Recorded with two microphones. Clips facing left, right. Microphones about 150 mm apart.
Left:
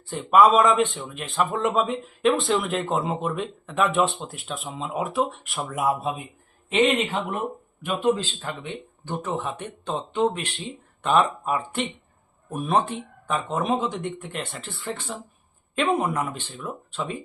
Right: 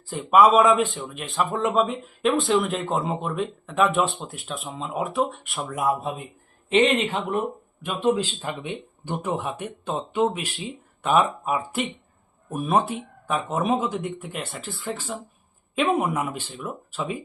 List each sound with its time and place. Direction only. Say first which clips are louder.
0.1 s a man's voice: even; centre (ahead or behind)
8.1 s a man's voice: right 3 dB; 10° right (ahead or behind)